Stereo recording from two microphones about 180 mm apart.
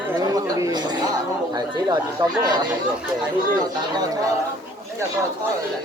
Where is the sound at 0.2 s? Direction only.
20° right (ahead or behind).